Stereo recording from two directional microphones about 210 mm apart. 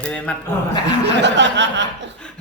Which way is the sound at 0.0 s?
5° left (ahead or behind).